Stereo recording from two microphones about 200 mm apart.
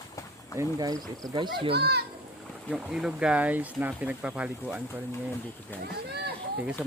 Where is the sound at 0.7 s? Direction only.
20° right (ahead or behind).